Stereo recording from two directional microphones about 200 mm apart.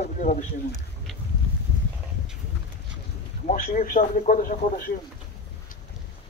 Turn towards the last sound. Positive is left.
turn(degrees=45)  # may be behind; listen again after turning